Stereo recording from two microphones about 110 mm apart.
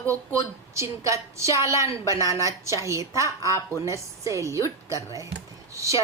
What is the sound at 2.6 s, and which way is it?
A woman's voice, 25° right (ahead or behind).